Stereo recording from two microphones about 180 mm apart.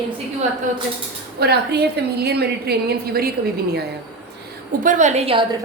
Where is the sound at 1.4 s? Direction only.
65° right (ahead or behind).